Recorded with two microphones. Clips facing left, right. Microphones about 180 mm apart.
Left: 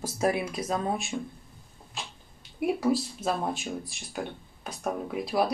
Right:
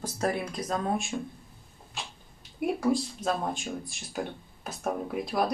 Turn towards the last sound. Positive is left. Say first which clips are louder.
# left 1 dB
turn(degrees=0)  # may be behind; listen again after turning